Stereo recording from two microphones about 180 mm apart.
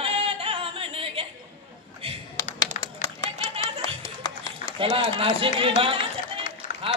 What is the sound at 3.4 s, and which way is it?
Music, 30° right (ahead or behind).